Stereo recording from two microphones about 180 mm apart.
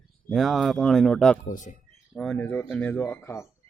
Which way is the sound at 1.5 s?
45° left (ahead or behind).